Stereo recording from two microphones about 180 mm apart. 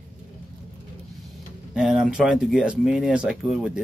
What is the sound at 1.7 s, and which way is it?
Speech, 5° right (ahead or behind).